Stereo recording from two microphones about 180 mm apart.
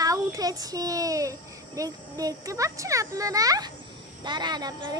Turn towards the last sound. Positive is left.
turn(degrees=-25)  # may be behind; listen again after turning